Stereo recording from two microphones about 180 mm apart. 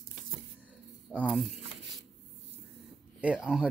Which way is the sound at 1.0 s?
Centre (ahead or behind).